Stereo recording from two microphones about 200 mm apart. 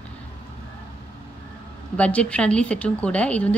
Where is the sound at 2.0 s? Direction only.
5° left (ahead or behind).